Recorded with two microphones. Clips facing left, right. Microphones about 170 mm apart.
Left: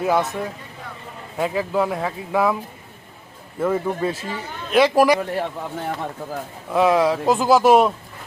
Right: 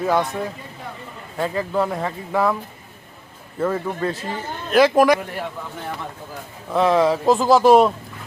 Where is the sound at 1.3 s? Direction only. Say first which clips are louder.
Left 1 dB; 5° left (ahead or behind).